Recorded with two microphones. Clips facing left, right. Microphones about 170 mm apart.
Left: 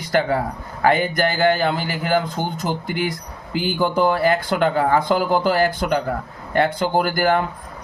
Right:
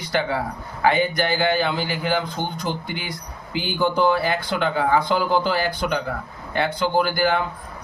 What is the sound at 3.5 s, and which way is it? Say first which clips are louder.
Speech: left 2 dB; 45° left (ahead or behind).